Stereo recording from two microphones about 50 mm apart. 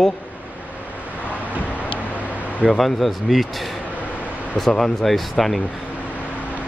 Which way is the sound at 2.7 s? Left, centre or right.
Centre.